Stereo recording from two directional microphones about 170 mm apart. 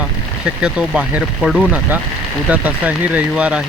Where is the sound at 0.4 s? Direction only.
5° right (ahead or behind).